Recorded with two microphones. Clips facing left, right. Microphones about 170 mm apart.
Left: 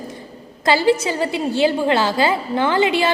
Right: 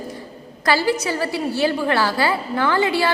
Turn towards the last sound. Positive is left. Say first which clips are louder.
# left 2 dB
turn(degrees=20)  # may be behind; listen again after turning